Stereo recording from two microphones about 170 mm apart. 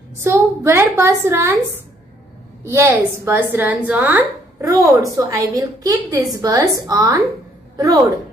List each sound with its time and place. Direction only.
0.2 s a woman's voice: 15° right (ahead or behind)
2.6 s a woman's voice: 15° right (ahead or behind)